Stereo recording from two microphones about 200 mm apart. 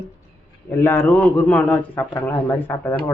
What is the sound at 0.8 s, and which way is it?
A man's voice, 10° left (ahead or behind).